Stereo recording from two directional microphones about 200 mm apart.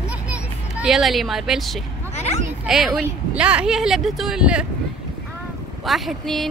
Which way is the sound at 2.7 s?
Centre (ahead or behind).